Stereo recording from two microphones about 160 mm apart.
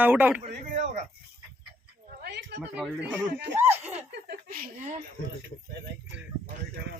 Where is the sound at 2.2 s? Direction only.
90° right.